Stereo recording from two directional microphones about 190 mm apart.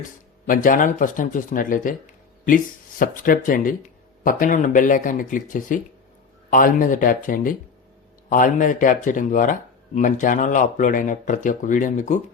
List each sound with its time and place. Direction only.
0.4 s speech: 45° left (ahead or behind)
3.0 s speech: 45° left (ahead or behind)